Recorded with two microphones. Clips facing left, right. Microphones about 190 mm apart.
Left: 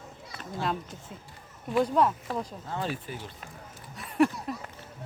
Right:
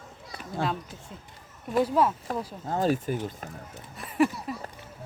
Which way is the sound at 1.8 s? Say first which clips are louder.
Right 1 dB; 5° right (ahead or behind).